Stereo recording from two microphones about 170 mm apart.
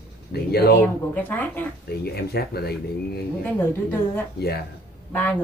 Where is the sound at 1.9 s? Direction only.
70° left (ahead or behind).